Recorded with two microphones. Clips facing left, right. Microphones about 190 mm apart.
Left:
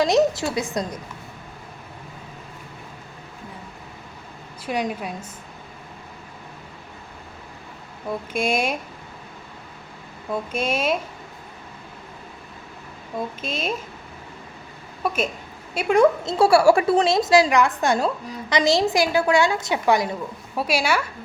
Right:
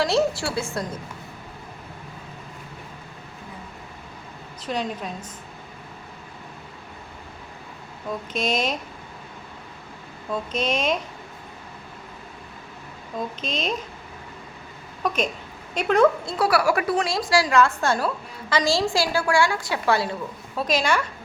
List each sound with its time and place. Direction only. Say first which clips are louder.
0.0 s a woman's voice: left 3 dB; 20° left (ahead or behind)
4.6 s a woman's voice: left 2 dB; 10° left (ahead or behind)
8.1 s a woman's voice: left 2 dB; 10° left (ahead or behind)
10.3 s a woman's voice: left 1 dB; 10° left (ahead or behind)
13.1 s a woman's voice: left 1 dB; 10° left (ahead or behind)
15.0 s a woman's voice: even; 5° left (ahead or behind)
16.4 s a woman's voice: left 6 dB; 30° left (ahead or behind); by 21.1 s 10° left (ahead or behind)